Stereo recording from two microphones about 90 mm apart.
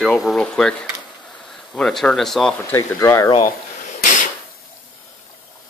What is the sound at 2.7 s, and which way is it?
Speech, 30° left (ahead or behind).